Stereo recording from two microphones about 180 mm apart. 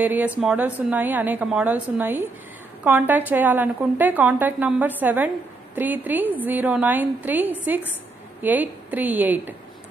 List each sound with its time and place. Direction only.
0.0 s a woman's voice: 10° right (ahead or behind)